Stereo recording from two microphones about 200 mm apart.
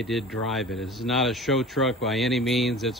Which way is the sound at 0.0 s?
Centre (ahead or behind).